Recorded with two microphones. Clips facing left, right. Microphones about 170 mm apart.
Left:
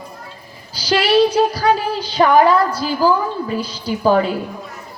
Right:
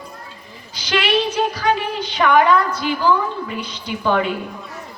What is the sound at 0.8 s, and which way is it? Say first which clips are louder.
A woman's voice: left 6 dB; 35° left (ahead or behind).